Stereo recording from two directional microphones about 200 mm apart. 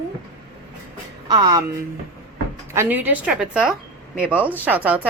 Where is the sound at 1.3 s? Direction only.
20° right (ahead or behind).